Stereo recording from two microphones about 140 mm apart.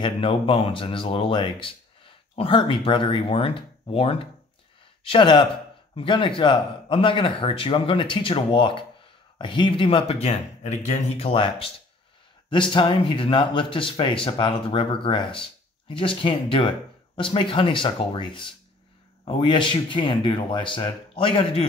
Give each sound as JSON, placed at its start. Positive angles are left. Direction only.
{"t": 0.0, "sound": "speech", "side_deg": 40}